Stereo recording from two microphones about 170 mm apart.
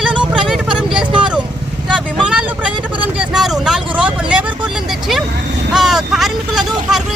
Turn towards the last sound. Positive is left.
turn(degrees=0)  # may be behind; listen again after turning